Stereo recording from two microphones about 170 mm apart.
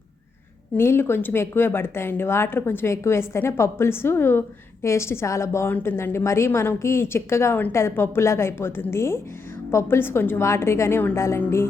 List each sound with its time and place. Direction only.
0.8 s speech: 15° left (ahead or behind)